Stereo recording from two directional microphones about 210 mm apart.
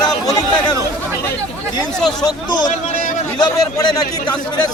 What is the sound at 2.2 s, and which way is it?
Speech, 20° left (ahead or behind).